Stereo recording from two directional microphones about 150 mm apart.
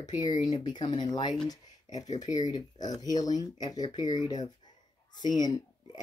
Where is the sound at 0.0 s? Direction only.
25° left (ahead or behind).